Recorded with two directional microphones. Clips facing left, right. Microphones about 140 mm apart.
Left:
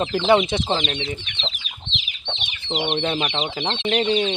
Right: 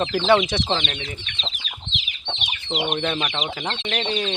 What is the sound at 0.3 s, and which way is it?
Speech, 25° left (ahead or behind).